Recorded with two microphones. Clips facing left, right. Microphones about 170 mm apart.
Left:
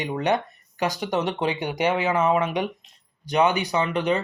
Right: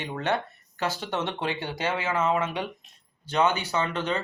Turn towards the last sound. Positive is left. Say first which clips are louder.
# left 5 dB
turn(degrees=15)  # may be behind; listen again after turning